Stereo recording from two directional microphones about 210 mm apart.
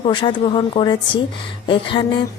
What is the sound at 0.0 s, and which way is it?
Speech, 25° left (ahead or behind).